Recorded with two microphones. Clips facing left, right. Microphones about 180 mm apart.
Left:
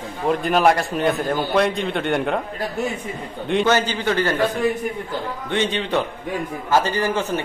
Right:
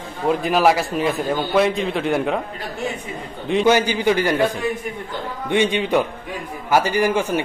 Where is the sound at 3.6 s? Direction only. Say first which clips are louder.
Right 6 dB; 10° right (ahead or behind).